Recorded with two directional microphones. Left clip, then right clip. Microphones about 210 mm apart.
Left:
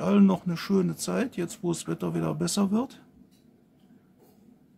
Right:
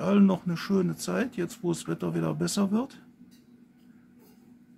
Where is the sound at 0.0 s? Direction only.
10° left (ahead or behind).